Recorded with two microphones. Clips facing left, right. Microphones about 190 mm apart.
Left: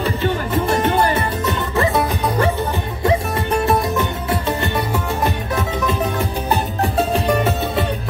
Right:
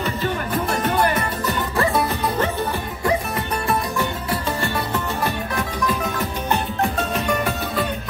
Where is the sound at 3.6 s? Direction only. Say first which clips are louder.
Left 3 dB; 25° left (ahead or behind).